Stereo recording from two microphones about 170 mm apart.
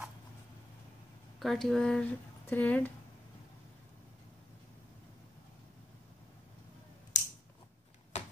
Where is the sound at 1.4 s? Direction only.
Centre (ahead or behind).